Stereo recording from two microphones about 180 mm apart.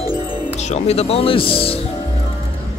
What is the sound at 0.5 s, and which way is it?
Speech, 40° left (ahead or behind).